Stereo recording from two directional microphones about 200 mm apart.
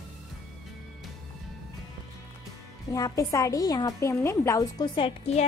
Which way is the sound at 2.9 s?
15° left (ahead or behind).